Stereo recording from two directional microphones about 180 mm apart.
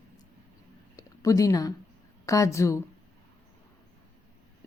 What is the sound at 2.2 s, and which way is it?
Speech, 15° left (ahead or behind).